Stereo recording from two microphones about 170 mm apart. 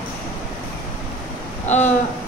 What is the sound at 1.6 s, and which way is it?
Speech, 45° left (ahead or behind).